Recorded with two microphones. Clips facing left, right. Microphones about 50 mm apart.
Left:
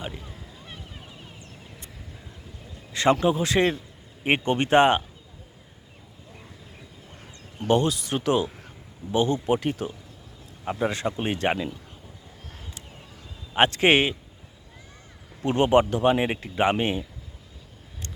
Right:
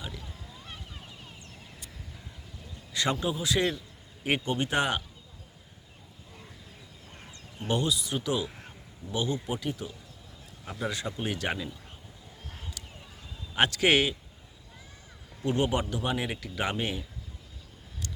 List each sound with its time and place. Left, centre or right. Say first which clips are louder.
0.0 s a sound: left 5 dB; left
0.6 s a sound: left 2 dB; centre
2.9 s a man's voice: left 8 dB; left
7.7 s speech: left 7 dB; left
10.7 s speech: left 7 dB; left
13.5 s speech: left 5 dB; left
15.4 s speech: left 8 dB; left